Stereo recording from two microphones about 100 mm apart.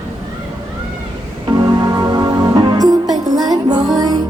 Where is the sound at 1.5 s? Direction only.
45° right (ahead or behind).